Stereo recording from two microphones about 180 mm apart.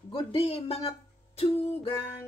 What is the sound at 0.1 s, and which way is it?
Speech, 30° left (ahead or behind).